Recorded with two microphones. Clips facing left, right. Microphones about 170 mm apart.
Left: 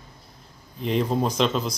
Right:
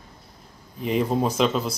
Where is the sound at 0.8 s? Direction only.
5° right (ahead or behind).